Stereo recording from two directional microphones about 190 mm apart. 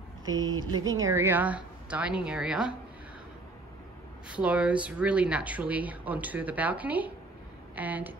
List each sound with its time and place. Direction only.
0.6 s speech: 20° right (ahead or behind)
0.8 s speech: 90° right
1.1 s speech: 10° right (ahead or behind)
4.3 s speech: 5° right (ahead or behind)